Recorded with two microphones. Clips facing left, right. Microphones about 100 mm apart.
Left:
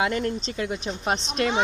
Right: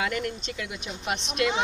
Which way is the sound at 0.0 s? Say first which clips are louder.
Left 4 dB; 30° left (ahead or behind).